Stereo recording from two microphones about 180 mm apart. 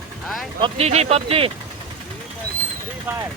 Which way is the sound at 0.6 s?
35° right (ahead or behind).